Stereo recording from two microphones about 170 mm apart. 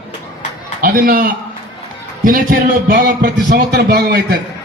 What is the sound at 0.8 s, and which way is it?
A man's voice, 60° right (ahead or behind).